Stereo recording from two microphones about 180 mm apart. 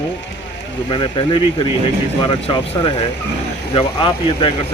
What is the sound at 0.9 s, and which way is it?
Speech, 30° left (ahead or behind).